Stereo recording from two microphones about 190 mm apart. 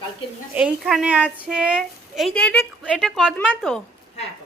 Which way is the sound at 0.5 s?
5° right (ahead or behind).